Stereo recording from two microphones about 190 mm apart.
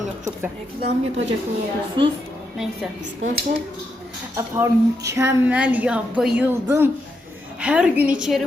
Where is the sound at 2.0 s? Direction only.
25° right (ahead or behind).